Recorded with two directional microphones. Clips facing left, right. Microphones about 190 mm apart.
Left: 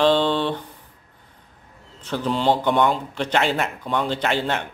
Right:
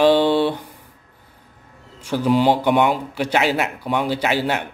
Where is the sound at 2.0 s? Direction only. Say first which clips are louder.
Right 6 dB; 10° right (ahead or behind).